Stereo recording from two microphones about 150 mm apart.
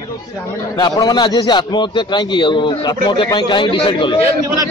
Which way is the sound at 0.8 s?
25° left (ahead or behind).